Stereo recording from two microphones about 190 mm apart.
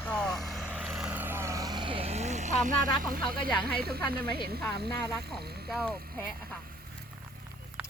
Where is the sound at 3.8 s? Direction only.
55° right (ahead or behind).